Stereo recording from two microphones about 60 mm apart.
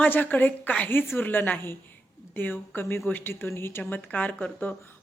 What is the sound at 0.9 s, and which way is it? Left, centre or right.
Speech, left.